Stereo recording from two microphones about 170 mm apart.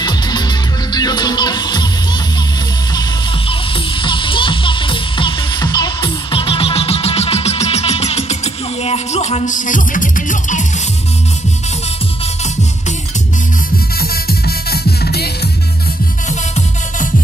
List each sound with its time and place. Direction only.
0.0 s music: 25° left (ahead or behind)
4.0 s music: 30° left (ahead or behind); by 10.6 s 50° left (ahead or behind)
14.7 s music: 70° left (ahead or behind)